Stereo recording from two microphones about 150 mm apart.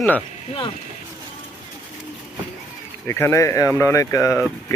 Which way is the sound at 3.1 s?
15° left (ahead or behind).